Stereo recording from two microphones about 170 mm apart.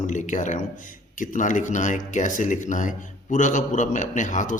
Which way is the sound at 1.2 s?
50° left (ahead or behind).